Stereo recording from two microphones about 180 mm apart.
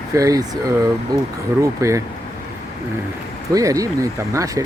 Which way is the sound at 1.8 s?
15° right (ahead or behind).